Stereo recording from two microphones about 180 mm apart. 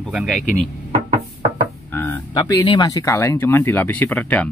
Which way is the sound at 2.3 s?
20° left (ahead or behind).